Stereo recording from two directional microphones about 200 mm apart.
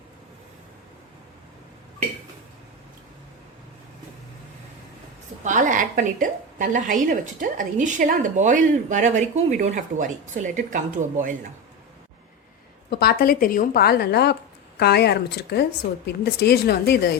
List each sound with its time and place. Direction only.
5.4 s a woman's voice: 40° right (ahead or behind)
12.9 s a woman's voice: 55° left (ahead or behind)